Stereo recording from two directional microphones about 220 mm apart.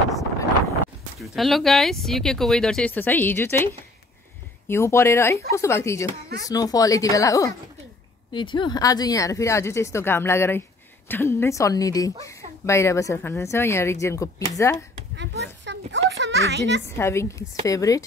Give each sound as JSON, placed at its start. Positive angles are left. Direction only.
{"t": 1.2, "sound": "speech", "side_deg": 0}
{"t": 15.1, "sound": "a child's voice", "side_deg": -55}
{"t": 16.8, "sound": "speech", "side_deg": 10}